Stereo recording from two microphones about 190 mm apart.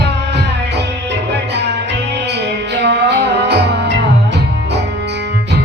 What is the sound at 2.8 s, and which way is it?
Music, 65° right (ahead or behind).